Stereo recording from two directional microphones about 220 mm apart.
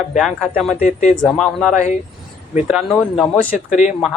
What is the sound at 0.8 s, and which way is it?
Speech, 35° left (ahead or behind).